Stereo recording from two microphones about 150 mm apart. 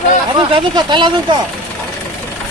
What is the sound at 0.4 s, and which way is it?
Speech, 30° right (ahead or behind).